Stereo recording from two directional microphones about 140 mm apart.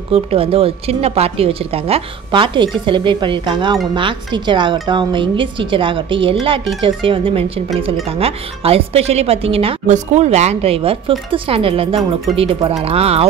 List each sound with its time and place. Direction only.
0.1 s a woman's voice: 45° right (ahead or behind)
9.8 s speech: 55° right (ahead or behind)